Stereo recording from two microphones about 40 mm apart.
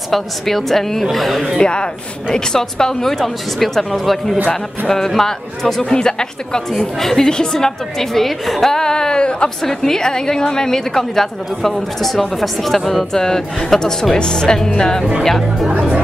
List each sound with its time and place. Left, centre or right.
0.1 s a woman's voice: centre
1.6 s a woman's voice: left
7.0 s a woman's voice: centre
9.6 s a woman's voice: centre